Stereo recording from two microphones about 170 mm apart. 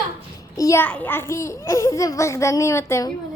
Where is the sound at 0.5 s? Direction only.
20° left (ahead or behind).